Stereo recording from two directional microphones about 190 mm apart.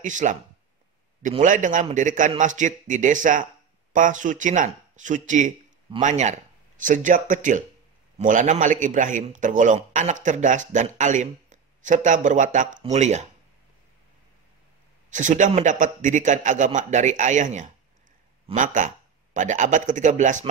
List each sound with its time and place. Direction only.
0.0 s a man's voice: 40° right (ahead or behind)
1.4 s a man's voice: 40° right (ahead or behind)
15.0 s a man's voice: 40° right (ahead or behind)